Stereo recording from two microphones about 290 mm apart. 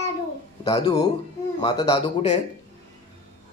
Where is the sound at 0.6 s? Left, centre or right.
Centre.